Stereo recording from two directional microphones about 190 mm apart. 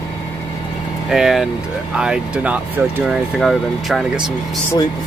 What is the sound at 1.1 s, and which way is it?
Speech, centre (ahead or behind).